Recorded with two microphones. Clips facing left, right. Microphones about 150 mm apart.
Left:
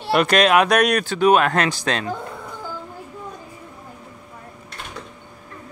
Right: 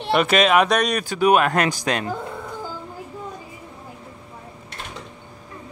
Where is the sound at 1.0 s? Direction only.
10° right (ahead or behind).